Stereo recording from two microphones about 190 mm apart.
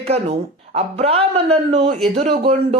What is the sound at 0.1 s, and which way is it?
Speech, 35° right (ahead or behind).